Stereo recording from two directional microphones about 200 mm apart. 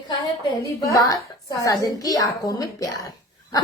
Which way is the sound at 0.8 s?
15° left (ahead or behind).